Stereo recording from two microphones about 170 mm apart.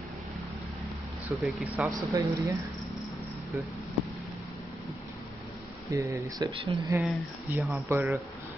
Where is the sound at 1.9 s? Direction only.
20° right (ahead or behind).